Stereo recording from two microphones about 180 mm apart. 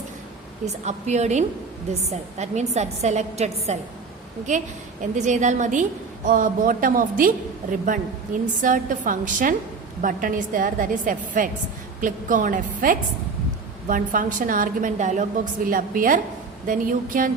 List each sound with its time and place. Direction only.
0.9 s a woman's voice: 40° right (ahead or behind)
5.1 s a woman's voice: 40° right (ahead or behind)